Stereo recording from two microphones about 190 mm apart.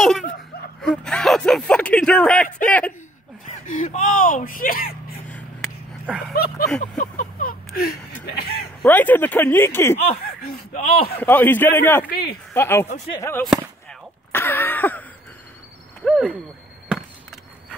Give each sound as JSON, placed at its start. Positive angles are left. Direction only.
{"t": 0.8, "sound": "speech", "side_deg": 5}
{"t": 3.4, "sound": "speech", "side_deg": 45}
{"t": 6.0, "sound": "speech", "side_deg": -5}
{"t": 7.0, "sound": "music", "side_deg": 45}
{"t": 8.8, "sound": "speech", "side_deg": 10}
{"t": 9.9, "sound": "speech", "side_deg": 50}
{"t": 11.1, "sound": "speech", "side_deg": 10}
{"t": 12.1, "sound": "speech", "side_deg": 55}
{"t": 12.5, "sound": "speech", "side_deg": 10}
{"t": 16.0, "sound": "speech", "side_deg": 0}